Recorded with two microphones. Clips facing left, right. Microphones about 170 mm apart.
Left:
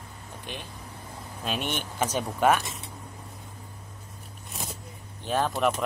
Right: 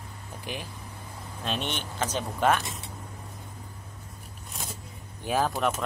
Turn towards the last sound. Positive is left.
turn(degrees=0)  # may be behind; listen again after turning